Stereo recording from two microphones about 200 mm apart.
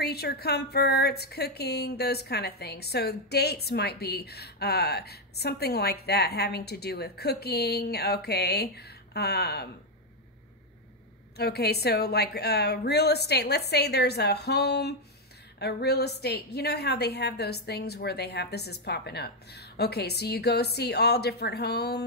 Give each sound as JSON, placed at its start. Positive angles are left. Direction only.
{"t": 0.0, "sound": "speech", "side_deg": 55}
{"t": 11.3, "sound": "a woman's voice", "side_deg": 55}